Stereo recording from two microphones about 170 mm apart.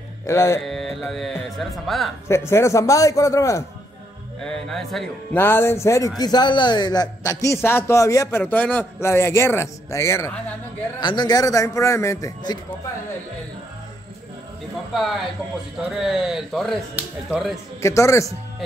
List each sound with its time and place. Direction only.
0.3 s a man's voice: 15° left (ahead or behind)
0.6 s speech: centre (ahead or behind)
2.2 s a man's voice: 15° left (ahead or behind)
4.4 s speech: 5° left (ahead or behind)
5.4 s a man's voice: 15° left (ahead or behind)
15.0 s speech: centre (ahead or behind)
17.8 s a man's voice: 15° left (ahead or behind)